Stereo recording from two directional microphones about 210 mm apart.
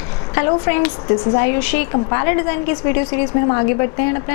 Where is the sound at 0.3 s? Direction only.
15° left (ahead or behind).